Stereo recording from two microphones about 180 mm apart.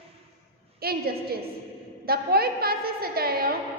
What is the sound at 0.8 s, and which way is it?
A woman's voice, 60° right (ahead or behind).